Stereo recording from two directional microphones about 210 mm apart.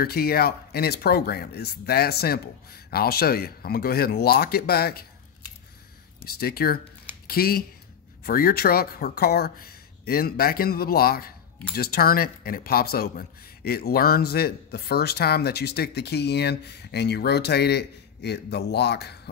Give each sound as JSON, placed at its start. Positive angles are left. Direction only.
{"t": 0.0, "sound": "speech", "side_deg": 45}
{"t": 6.2, "sound": "speech", "side_deg": 45}